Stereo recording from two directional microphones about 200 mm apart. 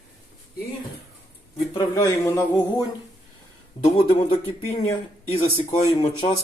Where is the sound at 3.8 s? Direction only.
30° left (ahead or behind).